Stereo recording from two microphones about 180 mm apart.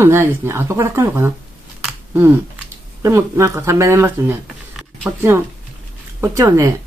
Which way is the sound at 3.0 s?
15° right (ahead or behind).